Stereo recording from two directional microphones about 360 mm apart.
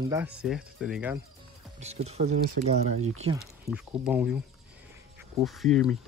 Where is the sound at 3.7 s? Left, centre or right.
Centre.